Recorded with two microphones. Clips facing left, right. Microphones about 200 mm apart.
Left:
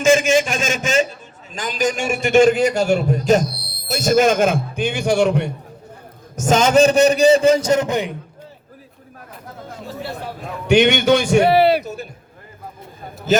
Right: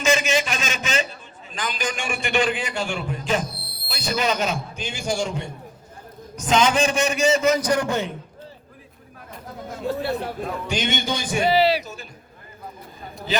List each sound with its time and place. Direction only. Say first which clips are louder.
0.0 s a man's voice: left 7 dB; 50° left (ahead or behind); by 5.5 s 65° left (ahead or behind)
6.3 s a man's voice: left 6 dB; 45° left (ahead or behind); by 8.1 s 15° left (ahead or behind)
10.7 s a man's voice: left 14 dB; 70° left (ahead or behind)